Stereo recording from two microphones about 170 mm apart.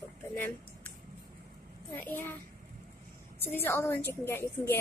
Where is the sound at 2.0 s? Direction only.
10° left (ahead or behind).